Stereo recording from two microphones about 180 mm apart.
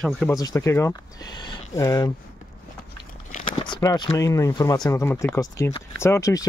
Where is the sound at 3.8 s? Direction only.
20° left (ahead or behind).